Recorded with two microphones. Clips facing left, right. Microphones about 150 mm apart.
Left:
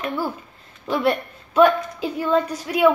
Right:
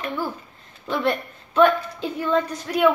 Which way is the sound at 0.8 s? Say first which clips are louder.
Left 2 dB; 10° left (ahead or behind).